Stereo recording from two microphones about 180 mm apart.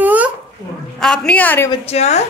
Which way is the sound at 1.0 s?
5° left (ahead or behind).